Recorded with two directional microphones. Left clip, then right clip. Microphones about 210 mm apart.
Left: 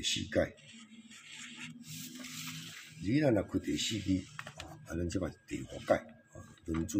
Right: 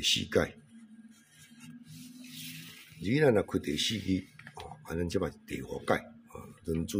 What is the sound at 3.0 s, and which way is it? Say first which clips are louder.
Speech: right 4 dB; 55° right (ahead or behind).